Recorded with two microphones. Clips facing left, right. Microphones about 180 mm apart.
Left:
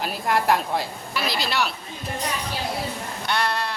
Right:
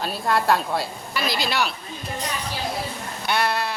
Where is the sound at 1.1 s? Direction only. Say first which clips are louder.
Right 1 dB; centre (ahead or behind).